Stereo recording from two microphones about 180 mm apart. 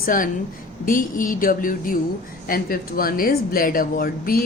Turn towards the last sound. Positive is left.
turn(degrees=55)  # may be behind; listen again after turning